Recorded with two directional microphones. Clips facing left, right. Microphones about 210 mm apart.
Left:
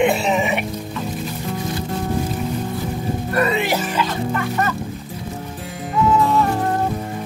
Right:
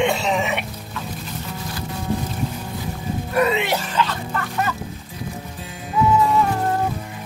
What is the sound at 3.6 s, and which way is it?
Music, 5° left (ahead or behind).